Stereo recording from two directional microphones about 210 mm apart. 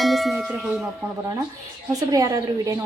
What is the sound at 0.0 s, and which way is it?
Tubular bells, centre (ahead or behind).